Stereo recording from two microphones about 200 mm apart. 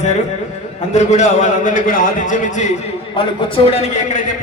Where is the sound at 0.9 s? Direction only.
35° left (ahead or behind).